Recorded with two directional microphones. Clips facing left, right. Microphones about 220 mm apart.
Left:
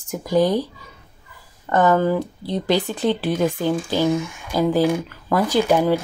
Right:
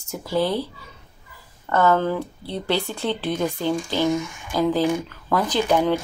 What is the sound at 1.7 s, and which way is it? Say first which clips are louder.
Speech: left 2 dB; 15° left (ahead or behind).